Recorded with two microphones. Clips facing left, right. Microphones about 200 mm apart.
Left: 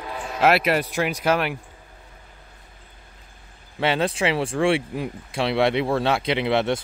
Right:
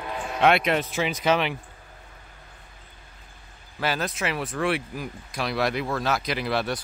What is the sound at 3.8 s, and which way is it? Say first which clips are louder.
Speech: left 6 dB; 30° left (ahead or behind).